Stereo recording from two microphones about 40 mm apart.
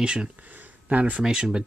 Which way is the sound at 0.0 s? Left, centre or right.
Right.